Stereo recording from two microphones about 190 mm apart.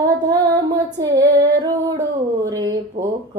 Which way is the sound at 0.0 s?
20° right (ahead or behind).